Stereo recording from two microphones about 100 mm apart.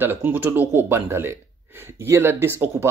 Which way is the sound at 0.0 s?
20° right (ahead or behind).